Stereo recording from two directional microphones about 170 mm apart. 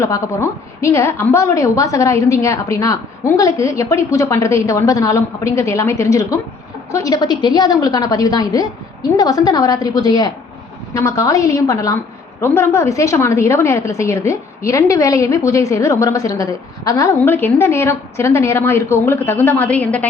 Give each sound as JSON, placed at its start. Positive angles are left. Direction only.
{"t": 0.0, "sound": "a woman's voice", "side_deg": 15}